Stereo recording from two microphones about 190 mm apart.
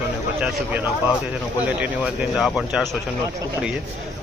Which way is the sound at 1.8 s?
5° right (ahead or behind).